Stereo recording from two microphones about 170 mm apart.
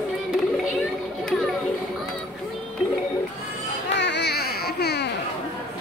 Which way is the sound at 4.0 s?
85° left.